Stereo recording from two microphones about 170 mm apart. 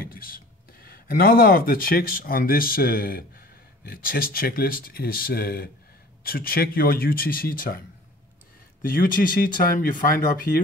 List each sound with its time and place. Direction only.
0.0 s a sound: 60° left (ahead or behind)
0.8 s speech: 60° left (ahead or behind)
8.8 s speech: 55° left (ahead or behind)